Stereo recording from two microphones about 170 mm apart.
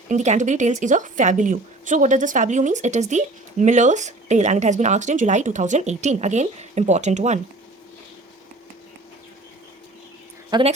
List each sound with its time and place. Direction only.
0.1 s a woman's voice: 45° right (ahead or behind)
10.5 s a woman's voice: 25° right (ahead or behind)